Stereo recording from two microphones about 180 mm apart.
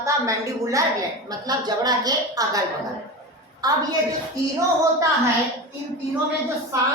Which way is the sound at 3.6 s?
20° right (ahead or behind).